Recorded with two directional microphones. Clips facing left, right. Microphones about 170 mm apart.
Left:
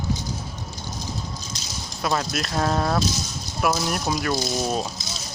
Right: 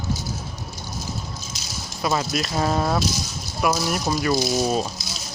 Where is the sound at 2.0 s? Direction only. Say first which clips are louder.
Right 2 dB; 5° right (ahead or behind).